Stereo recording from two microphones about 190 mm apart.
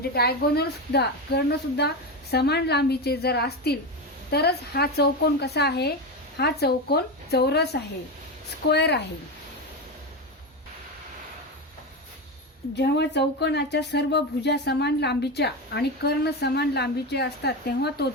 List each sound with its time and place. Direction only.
0.0 s speech: 55° left (ahead or behind)
12.7 s speech: 60° left (ahead or behind)